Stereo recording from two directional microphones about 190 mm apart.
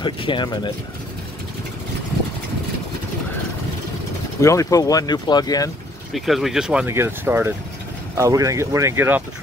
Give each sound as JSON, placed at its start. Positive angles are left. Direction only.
{"t": 0.0, "sound": "speech", "side_deg": 25}
{"t": 4.4, "sound": "speech", "side_deg": 15}
{"t": 6.1, "sound": "speech", "side_deg": 0}